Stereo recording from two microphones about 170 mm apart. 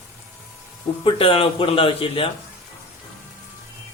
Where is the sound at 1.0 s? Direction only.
35° left (ahead or behind).